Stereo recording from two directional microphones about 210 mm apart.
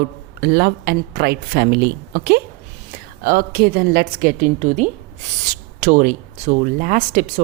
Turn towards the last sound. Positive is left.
turn(degrees=-40)  # may be behind; listen again after turning